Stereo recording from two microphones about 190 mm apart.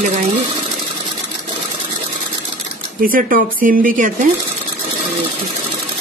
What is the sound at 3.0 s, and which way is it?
Speech, 45° right (ahead or behind).